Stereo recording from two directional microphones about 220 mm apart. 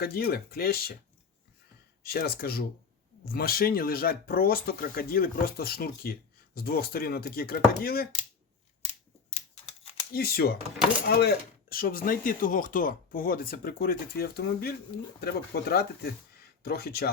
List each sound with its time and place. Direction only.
0.0 s speech: 45° left (ahead or behind)
2.0 s speech: 45° left (ahead or behind)
8.9 s typewriter: 30° left (ahead or behind)
10.1 s speech: 45° left (ahead or behind)